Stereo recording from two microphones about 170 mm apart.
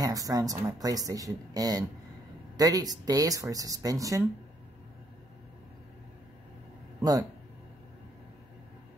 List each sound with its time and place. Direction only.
0.0 s speech: 20° right (ahead or behind)
7.0 s speech: 20° right (ahead or behind)